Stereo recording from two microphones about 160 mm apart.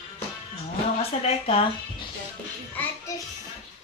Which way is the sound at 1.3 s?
40° left (ahead or behind).